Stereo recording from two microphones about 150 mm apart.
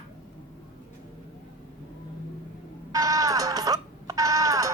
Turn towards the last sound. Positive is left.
turn(degrees=-20)  # may be behind; listen again after turning